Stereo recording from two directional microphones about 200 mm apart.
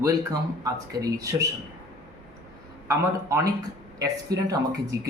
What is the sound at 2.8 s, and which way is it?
Speech, 15° right (ahead or behind).